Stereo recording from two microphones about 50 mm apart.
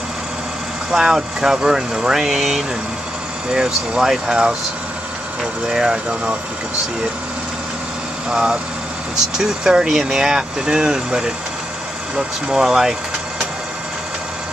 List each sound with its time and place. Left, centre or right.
0.9 s speech: centre
8.3 s speech: centre